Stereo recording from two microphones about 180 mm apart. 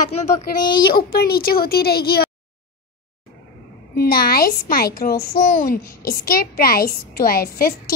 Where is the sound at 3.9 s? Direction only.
55° left (ahead or behind).